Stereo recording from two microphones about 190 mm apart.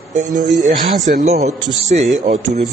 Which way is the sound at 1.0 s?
35° right (ahead or behind).